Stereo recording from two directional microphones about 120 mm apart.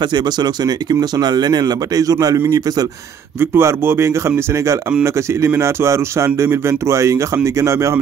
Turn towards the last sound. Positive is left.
turn(degrees=-25)  # may be behind; listen again after turning